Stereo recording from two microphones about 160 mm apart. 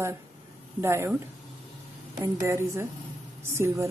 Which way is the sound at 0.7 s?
15° right (ahead or behind).